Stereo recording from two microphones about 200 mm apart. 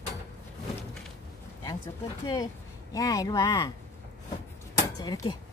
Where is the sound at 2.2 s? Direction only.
20° left (ahead or behind).